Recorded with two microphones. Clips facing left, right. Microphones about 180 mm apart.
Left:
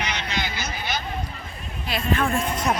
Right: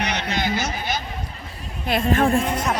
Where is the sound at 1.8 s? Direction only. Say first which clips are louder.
Right 5 dB; 50° right (ahead or behind).